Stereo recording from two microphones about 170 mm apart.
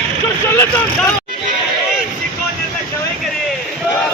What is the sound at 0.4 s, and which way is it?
Vehicle, 15° left (ahead or behind).